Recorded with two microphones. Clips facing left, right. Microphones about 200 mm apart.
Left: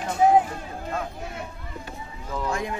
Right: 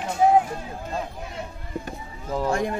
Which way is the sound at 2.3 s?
40° right (ahead or behind).